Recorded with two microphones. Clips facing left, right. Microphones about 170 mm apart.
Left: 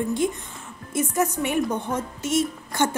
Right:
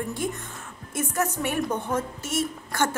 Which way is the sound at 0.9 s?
10° left (ahead or behind).